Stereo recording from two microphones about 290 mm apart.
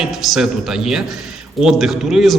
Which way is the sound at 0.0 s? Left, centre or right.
Centre.